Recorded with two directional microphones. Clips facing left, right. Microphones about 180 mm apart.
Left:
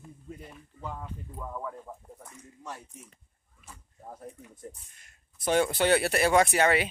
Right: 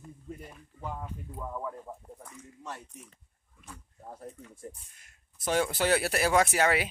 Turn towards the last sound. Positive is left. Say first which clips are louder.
# left 2 dB
turn(degrees=-5)  # may be behind; listen again after turning